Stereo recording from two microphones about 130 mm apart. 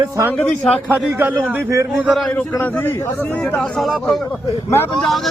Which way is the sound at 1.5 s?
20° right (ahead or behind).